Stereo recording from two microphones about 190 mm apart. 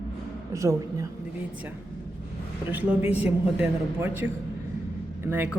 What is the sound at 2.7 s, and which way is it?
A man's voice, 10° right (ahead or behind).